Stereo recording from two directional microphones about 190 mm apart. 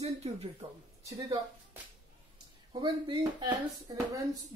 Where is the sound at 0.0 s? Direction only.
35° right (ahead or behind).